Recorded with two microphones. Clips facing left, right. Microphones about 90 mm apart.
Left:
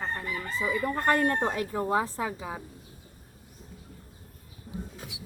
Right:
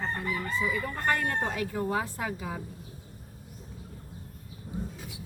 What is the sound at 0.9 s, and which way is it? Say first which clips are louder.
Speech: left 4 dB; 35° left (ahead or behind).